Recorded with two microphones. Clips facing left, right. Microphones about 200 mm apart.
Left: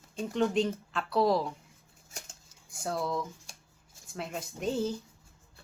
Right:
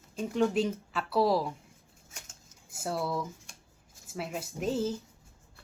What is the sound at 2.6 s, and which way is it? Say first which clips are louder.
A woman's voice: even; 5° right (ahead or behind).